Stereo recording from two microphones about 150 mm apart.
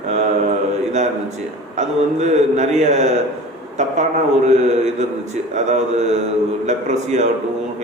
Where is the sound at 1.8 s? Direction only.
50° right (ahead or behind).